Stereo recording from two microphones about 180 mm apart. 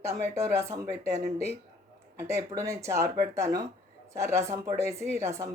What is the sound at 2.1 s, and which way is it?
Speech, 15° right (ahead or behind).